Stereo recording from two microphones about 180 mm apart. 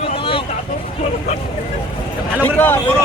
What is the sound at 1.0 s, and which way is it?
Speech, 35° left (ahead or behind).